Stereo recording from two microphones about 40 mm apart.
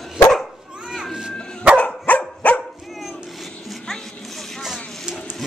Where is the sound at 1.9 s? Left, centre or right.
Left.